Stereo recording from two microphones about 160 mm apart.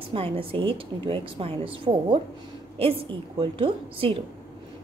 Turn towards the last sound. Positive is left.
turn(degrees=-35)  # may be behind; listen again after turning